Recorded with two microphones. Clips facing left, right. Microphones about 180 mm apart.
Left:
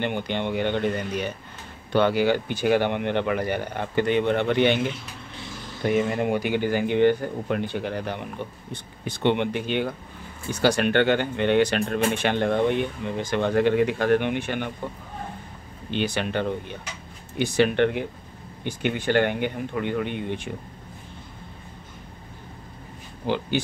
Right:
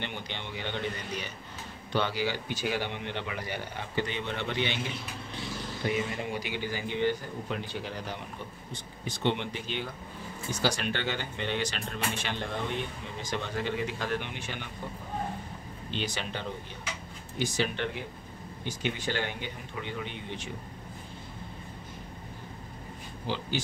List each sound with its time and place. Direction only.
0.0 s speech: 55° left (ahead or behind)
5.9 s speech: 50° left (ahead or behind)
15.9 s speech: 60° left (ahead or behind)
23.2 s speech: 60° left (ahead or behind)